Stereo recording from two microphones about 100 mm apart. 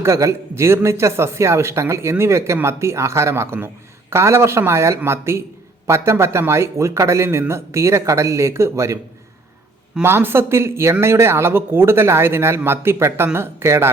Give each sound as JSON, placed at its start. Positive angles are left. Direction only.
{"t": 0.0, "sound": "speech", "side_deg": -30}
{"t": 10.0, "sound": "speech", "side_deg": -20}